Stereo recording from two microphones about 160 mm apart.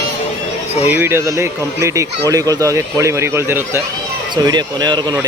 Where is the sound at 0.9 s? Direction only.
15° right (ahead or behind).